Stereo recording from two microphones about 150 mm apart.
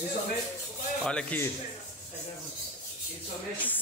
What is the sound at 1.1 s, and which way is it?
Speech, 10° left (ahead or behind).